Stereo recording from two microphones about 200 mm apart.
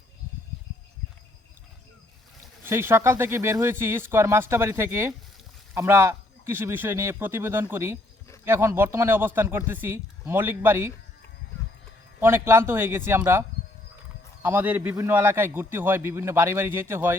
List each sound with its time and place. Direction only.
2.6 s a man's voice: 10° right (ahead or behind)
12.2 s a man's voice: 10° right (ahead or behind)
14.4 s a man's voice: 10° right (ahead or behind)